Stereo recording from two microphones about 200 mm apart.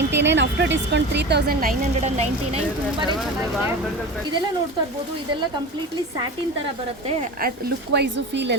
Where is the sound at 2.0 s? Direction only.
30° right (ahead or behind).